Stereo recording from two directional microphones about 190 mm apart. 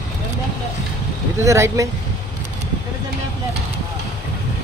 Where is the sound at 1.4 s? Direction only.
15° right (ahead or behind).